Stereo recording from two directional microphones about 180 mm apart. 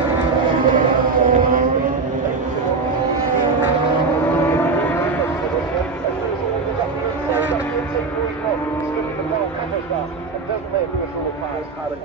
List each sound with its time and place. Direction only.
0.7 s chant: 50° right (ahead or behind)